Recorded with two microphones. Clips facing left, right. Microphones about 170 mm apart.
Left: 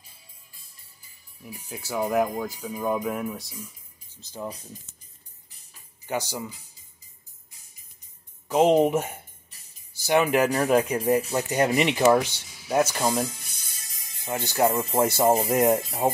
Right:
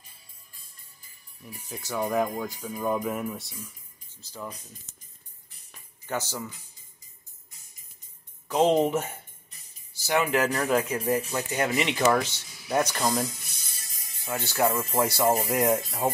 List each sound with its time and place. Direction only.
1.4 s speech: 10° left (ahead or behind)
3.5 s music: 10° left (ahead or behind)
4.9 s music: centre (ahead or behind)
6.0 s speech: 15° left (ahead or behind)
8.5 s speech: 10° left (ahead or behind)
11.1 s speech: 35° left (ahead or behind)
11.7 s speech: 15° left (ahead or behind)
14.2 s speech: 15° left (ahead or behind)